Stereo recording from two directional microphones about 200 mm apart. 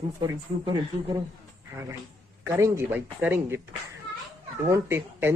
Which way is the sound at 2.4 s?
15° right (ahead or behind).